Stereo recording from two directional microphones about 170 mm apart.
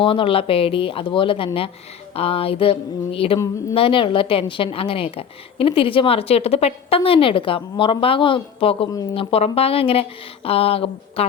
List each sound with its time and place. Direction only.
0.0 s a woman's voice: 30° left (ahead or behind)